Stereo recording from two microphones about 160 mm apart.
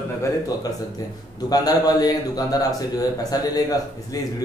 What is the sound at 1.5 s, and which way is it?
A man's voice, 25° left (ahead or behind).